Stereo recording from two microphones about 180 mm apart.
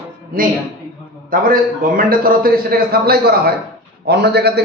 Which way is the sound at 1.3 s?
50° right (ahead or behind).